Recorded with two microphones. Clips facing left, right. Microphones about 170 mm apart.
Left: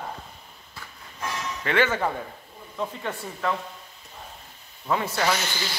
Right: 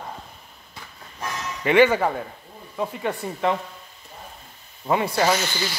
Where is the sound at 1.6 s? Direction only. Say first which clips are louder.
Right 7 dB; 15° right (ahead or behind).